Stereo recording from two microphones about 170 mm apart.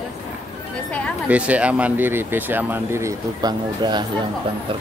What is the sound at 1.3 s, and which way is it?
Speech, 10° right (ahead or behind).